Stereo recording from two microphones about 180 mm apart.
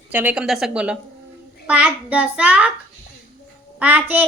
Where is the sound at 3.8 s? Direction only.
10° right (ahead or behind).